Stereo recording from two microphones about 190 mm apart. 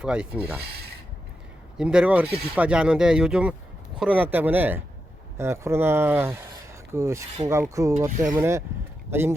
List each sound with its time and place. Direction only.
0.0 s speech: 5° right (ahead or behind)
1.8 s speech: 5° right (ahead or behind)